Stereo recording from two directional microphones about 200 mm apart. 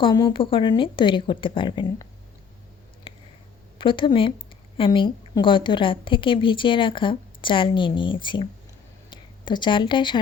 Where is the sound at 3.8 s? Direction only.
25° left (ahead or behind).